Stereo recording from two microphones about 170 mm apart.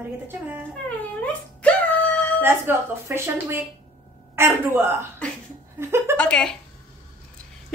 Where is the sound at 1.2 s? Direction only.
10° left (ahead or behind).